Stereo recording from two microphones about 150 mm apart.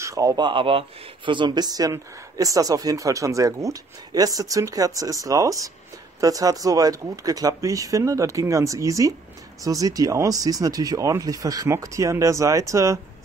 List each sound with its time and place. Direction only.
0.0 s speech: 20° right (ahead or behind)
0.5 s speech: 35° right (ahead or behind); by 13.0 s 20° right (ahead or behind)